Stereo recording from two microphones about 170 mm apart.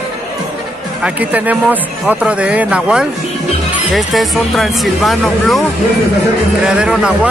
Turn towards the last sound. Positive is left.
turn(degrees=-5)  # may be behind; listen again after turning